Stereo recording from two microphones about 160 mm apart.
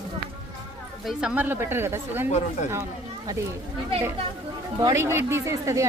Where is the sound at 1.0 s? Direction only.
5° right (ahead or behind).